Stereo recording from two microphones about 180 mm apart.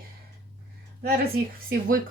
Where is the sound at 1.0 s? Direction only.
55° right (ahead or behind).